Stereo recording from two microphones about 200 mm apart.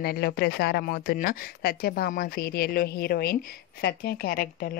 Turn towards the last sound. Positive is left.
turn(degrees=45)  # may be behind; listen again after turning